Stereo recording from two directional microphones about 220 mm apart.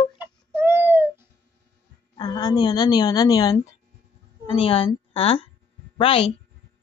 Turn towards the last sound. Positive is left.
turn(degrees=25)  # may be behind; listen again after turning